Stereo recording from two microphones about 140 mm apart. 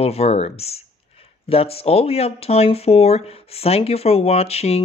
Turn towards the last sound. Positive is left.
turn(degrees=45)  # may be behind; listen again after turning